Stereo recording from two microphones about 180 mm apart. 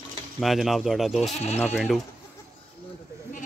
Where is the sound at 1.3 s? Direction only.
35° left (ahead or behind).